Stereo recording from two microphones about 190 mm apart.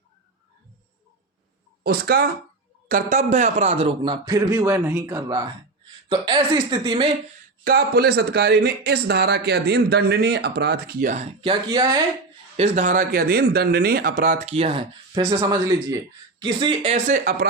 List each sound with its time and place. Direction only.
1.8 s speech: 55° right (ahead or behind)
2.9 s a man's voice: 40° right (ahead or behind); by 7.1 s 25° right (ahead or behind)
7.6 s speech: 55° right (ahead or behind); by 11.9 s 25° right (ahead or behind)
12.5 s a man's voice: 40° right (ahead or behind)